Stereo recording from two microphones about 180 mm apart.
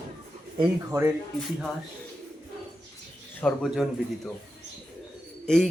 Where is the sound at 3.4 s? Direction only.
Centre (ahead or behind).